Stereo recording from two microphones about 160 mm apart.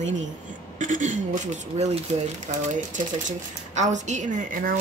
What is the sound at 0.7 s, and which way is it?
Speech, 50° right (ahead or behind).